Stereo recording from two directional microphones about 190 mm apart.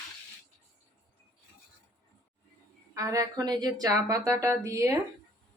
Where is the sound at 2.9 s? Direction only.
15° right (ahead or behind).